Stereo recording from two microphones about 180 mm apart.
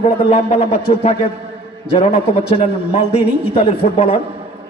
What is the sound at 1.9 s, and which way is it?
A man's voice, 35° left (ahead or behind).